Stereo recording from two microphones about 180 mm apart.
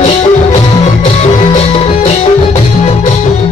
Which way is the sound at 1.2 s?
40° left (ahead or behind).